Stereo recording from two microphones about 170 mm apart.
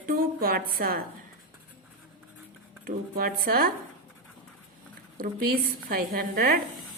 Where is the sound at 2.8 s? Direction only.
60° right (ahead or behind).